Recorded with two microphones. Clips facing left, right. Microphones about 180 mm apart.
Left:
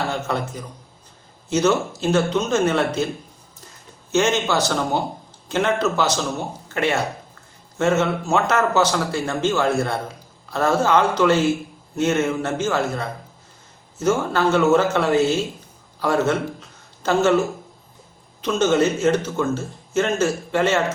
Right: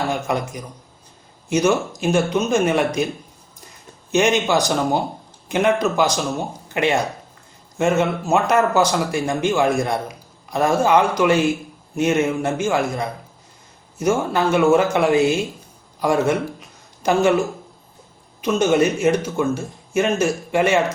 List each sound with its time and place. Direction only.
0.1 s a man's voice: 15° right (ahead or behind)
4.1 s a man's voice: 15° right (ahead or behind)
16.0 s a sound: 15° right (ahead or behind)
18.4 s a man's voice: 10° right (ahead or behind)